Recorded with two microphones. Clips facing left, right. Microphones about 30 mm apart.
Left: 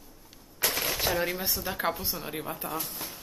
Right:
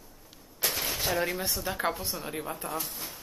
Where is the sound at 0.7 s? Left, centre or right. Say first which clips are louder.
Left 2 dB; left.